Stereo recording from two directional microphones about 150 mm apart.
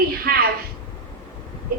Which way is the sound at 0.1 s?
85° right.